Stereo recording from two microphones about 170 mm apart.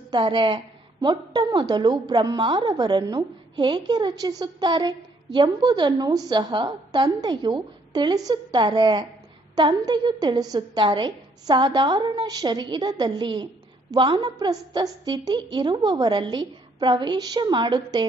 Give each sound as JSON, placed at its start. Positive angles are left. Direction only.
{"t": 0.1, "sound": "a woman's voice", "side_deg": -25}